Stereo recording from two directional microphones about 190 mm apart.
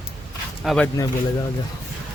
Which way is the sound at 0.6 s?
5° left (ahead or behind).